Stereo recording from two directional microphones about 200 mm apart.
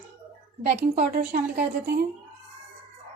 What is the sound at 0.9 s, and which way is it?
A woman's voice, 50° right (ahead or behind).